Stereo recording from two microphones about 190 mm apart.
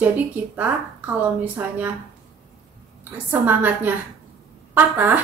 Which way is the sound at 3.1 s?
10° right (ahead or behind).